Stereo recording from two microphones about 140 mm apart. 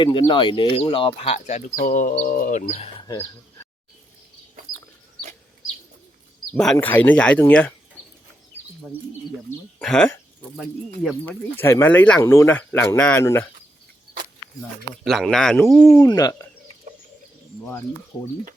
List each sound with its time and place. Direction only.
0.0 s speech: 35° left (ahead or behind); by 1.7 s 55° left (ahead or behind)
1.8 s speech: 75° left (ahead or behind)
2.2 s speech: 85° left
2.6 s speech: 50° left (ahead or behind)
6.5 s speech: 5° left (ahead or behind)
9.7 s speech: 5° left (ahead or behind)
11.3 s speech: 15° left (ahead or behind)
15.0 s speech: centre (ahead or behind)
16.0 s speech: 25° left (ahead or behind)